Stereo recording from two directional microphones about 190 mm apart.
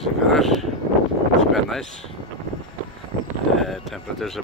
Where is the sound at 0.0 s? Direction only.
Centre (ahead or behind).